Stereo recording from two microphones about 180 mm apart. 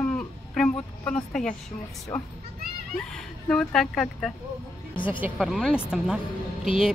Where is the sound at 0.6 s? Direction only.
5° left (ahead or behind).